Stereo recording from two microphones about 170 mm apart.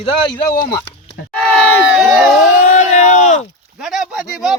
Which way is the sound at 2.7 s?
45° left (ahead or behind).